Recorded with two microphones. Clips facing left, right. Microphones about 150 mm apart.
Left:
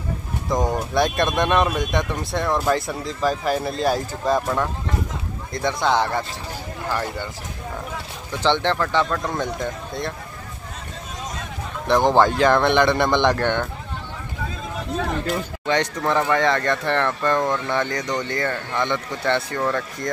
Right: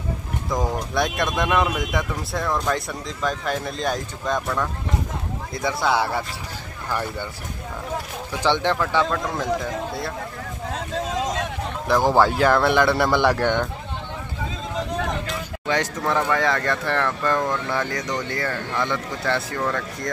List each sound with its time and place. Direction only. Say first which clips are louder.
0.5 s speech: left 3 dB; centre (ahead or behind)
5.5 s speech: left 2 dB; 5° right (ahead or behind)
8.3 s speech: left 1 dB; 10° right (ahead or behind)
10.7 s a sound: right 12 dB; 90° right
11.9 s speech: left 1 dB; 5° right (ahead or behind)
15.6 s speech: left 1 dB; 5° right (ahead or behind)